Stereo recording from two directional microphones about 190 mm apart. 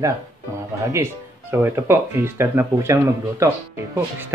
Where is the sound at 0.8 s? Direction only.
15° right (ahead or behind).